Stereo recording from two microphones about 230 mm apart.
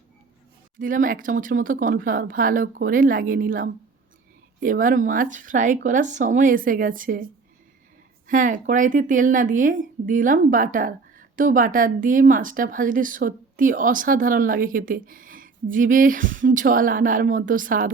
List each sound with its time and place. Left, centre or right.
0.8 s speech: right
8.3 s speech: right